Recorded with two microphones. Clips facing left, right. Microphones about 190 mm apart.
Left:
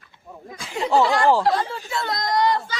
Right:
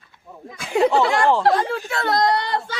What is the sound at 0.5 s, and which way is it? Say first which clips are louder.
Speech: right 3 dB; 65° right (ahead or behind).